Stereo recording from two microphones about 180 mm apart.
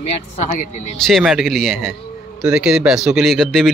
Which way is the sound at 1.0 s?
Centre (ahead or behind).